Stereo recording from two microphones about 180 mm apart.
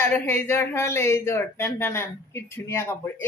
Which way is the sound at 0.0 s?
10° left (ahead or behind).